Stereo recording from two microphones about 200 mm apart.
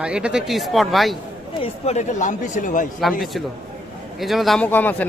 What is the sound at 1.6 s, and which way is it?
Speech, 35° left (ahead or behind).